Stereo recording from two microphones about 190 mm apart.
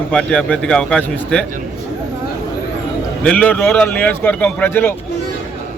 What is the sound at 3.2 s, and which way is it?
Speech, 5° left (ahead or behind).